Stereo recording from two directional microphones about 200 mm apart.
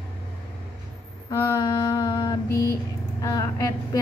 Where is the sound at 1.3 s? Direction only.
15° left (ahead or behind).